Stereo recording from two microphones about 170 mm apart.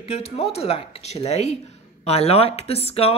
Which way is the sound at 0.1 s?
35° left (ahead or behind).